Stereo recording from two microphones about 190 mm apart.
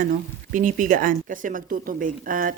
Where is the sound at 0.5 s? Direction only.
45° right (ahead or behind).